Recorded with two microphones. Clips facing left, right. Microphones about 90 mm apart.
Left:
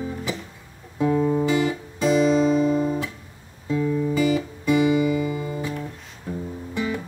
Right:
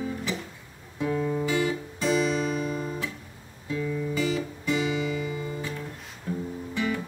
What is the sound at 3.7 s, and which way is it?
Music, 20° left (ahead or behind).